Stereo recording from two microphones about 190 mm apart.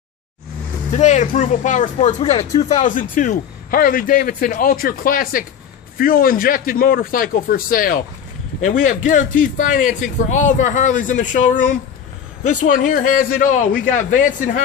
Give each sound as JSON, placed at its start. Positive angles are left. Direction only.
{"t": 0.9, "sound": "speech", "side_deg": 40}